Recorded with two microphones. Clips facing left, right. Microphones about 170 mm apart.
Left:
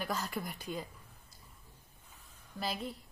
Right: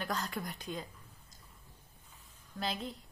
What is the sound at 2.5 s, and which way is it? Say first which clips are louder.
Speech: even; 5° left (ahead or behind).